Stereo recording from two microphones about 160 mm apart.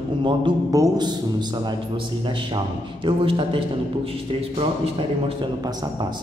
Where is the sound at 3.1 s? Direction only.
35° right (ahead or behind).